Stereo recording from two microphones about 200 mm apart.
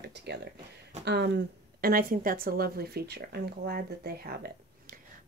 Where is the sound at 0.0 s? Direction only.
55° right (ahead or behind).